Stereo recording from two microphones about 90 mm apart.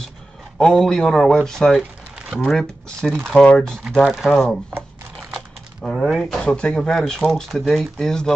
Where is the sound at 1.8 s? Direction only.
15° right (ahead or behind).